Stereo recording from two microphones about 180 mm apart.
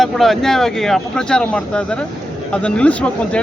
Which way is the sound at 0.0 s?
Centre (ahead or behind).